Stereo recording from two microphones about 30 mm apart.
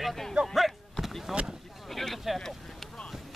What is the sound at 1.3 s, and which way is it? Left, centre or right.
Speech, right.